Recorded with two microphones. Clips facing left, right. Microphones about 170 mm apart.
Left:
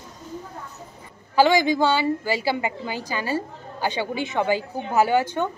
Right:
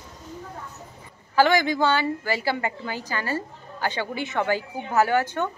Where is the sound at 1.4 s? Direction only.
15° left (ahead or behind).